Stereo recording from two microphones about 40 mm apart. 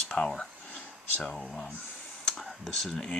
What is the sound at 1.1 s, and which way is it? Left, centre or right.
Speech, centre.